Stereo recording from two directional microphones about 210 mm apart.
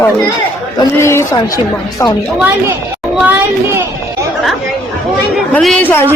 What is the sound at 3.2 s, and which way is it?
Speech, 10° right (ahead or behind).